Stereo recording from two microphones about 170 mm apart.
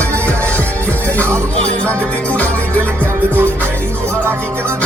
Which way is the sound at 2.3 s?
10° left (ahead or behind).